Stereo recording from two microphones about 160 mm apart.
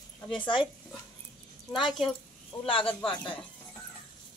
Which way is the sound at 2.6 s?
35° left (ahead or behind).